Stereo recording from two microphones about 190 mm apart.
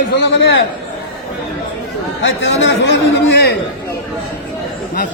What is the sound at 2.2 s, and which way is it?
A man's voice, 80° left.